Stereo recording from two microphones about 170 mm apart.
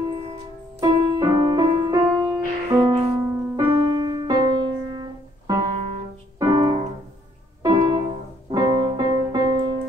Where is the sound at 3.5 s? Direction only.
20° right (ahead or behind).